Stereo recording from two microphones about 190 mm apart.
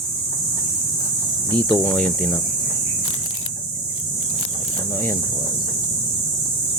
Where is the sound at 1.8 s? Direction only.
5° left (ahead or behind).